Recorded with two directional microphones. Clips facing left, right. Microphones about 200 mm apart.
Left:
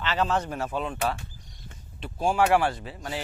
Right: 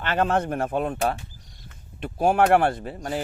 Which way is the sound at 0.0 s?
55° right (ahead or behind).